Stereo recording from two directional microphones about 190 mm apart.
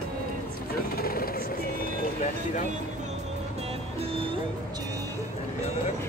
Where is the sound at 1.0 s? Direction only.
50° left (ahead or behind).